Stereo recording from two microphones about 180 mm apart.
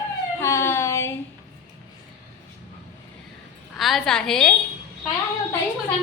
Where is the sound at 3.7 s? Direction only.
Centre (ahead or behind).